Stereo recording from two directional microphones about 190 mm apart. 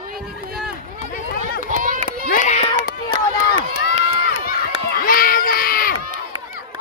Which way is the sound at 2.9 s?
55° left (ahead or behind).